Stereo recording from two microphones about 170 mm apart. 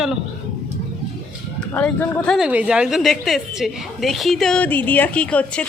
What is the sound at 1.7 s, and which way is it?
Speech, 10° left (ahead or behind).